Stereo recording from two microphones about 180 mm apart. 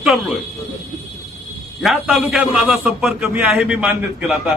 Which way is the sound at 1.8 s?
Centre (ahead or behind).